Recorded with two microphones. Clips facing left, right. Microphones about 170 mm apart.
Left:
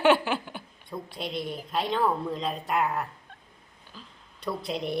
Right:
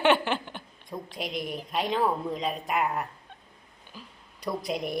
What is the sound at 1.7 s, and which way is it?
Speech, centre (ahead or behind).